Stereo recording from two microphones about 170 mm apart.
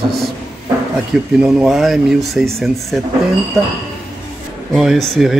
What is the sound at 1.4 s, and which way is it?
Speech, 5° right (ahead or behind).